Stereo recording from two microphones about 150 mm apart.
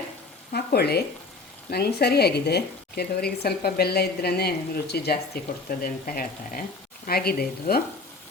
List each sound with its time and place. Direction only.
0.5 s speech: 90° left
7.1 s speech: 90° left